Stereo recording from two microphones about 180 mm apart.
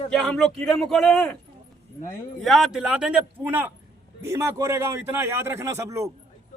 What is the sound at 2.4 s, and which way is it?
A man's voice, centre (ahead or behind).